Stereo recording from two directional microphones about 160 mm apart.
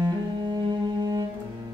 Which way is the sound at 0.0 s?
25° right (ahead or behind).